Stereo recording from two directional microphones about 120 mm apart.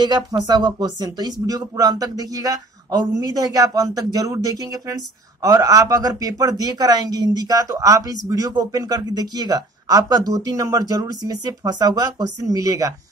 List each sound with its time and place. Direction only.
0.0 s speech: 35° right (ahead or behind)